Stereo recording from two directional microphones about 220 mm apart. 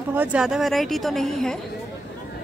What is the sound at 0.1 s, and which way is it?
A woman's voice, 5° right (ahead or behind).